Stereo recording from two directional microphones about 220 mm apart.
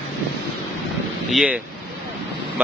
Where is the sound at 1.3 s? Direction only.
5° right (ahead or behind).